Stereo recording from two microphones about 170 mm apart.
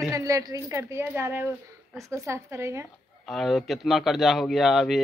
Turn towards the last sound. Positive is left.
turn(degrees=0)  # may be behind; listen again after turning